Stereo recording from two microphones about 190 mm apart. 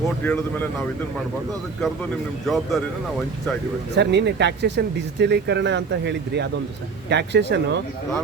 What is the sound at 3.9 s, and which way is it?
Speech, 65° right (ahead or behind).